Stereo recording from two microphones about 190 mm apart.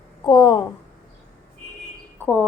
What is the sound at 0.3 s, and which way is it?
Speech, 20° left (ahead or behind).